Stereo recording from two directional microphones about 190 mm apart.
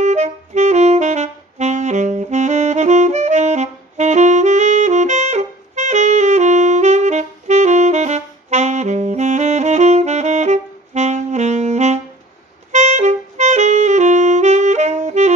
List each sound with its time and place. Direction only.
0.0 s saxophone: 35° right (ahead or behind)